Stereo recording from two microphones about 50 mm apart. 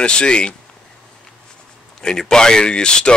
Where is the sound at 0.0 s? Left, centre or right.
Centre.